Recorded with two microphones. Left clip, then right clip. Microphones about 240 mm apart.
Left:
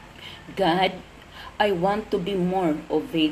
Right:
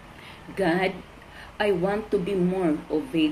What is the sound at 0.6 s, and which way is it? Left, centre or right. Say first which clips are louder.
Speech: left 3 dB; left.